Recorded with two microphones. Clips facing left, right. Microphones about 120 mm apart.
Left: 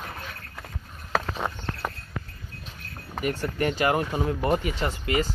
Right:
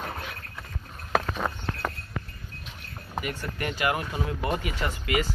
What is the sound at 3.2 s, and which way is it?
Speech, 30° left (ahead or behind).